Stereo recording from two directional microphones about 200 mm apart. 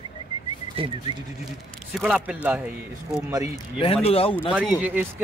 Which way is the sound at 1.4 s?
Centre (ahead or behind).